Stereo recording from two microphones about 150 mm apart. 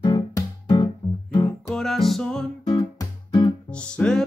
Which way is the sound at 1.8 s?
Centre (ahead or behind).